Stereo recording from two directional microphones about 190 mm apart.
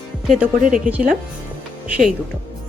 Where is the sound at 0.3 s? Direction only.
5° right (ahead or behind).